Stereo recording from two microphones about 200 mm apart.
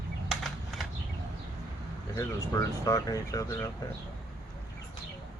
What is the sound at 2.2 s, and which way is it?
Speech, 15° left (ahead or behind).